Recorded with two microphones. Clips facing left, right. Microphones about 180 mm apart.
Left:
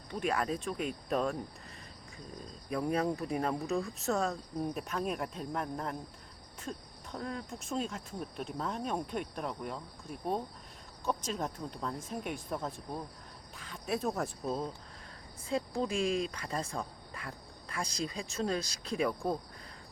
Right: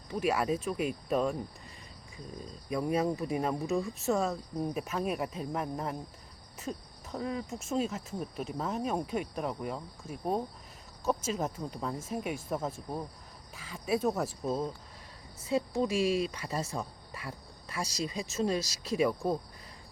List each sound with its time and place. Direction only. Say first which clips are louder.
0.1 s speech: right 3 dB; 5° right (ahead or behind)
2.7 s speech: right 2 dB; centre (ahead or behind)
13.6 s speech: right 4 dB; 5° right (ahead or behind)